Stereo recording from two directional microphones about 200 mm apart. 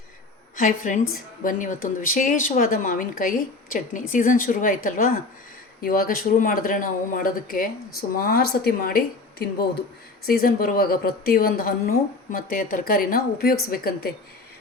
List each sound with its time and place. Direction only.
0.5 s a woman's voice: 40° left (ahead or behind)